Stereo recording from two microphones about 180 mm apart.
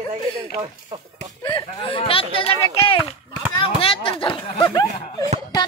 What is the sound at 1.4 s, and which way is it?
Speech, 25° left (ahead or behind).